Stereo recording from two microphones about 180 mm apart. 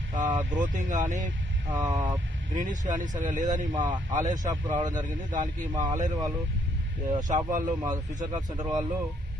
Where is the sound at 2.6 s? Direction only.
45° right (ahead or behind).